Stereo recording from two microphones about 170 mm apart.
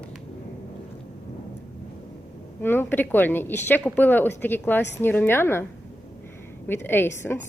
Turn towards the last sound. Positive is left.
turn(degrees=15)  # may be behind; listen again after turning